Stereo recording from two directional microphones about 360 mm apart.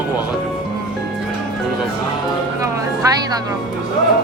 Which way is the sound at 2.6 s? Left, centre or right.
Centre.